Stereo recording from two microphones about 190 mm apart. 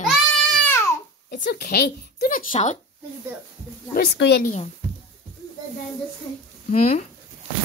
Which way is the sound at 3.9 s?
65° left (ahead or behind).